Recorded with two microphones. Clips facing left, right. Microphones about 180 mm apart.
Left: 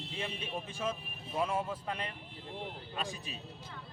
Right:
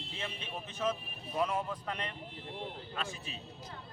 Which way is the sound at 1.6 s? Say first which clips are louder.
Left 1 dB; 10° left (ahead or behind).